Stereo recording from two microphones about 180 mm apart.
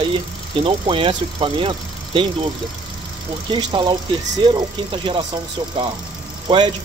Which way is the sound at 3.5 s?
25° right (ahead or behind).